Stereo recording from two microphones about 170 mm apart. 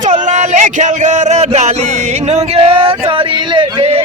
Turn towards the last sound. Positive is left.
turn(degrees=-35)  # may be behind; listen again after turning